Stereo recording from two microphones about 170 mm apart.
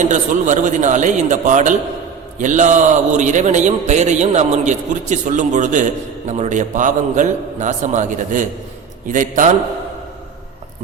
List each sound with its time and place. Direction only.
0.0 s a man's voice: 45° right (ahead or behind)